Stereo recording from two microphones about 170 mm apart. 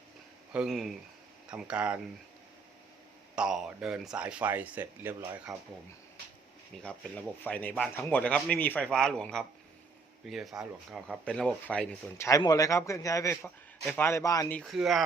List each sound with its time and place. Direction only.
0.5 s speech: centre (ahead or behind)
3.3 s speech: 5° right (ahead or behind)
7.4 s a man's voice: 10° left (ahead or behind)
14.5 s speech: centre (ahead or behind)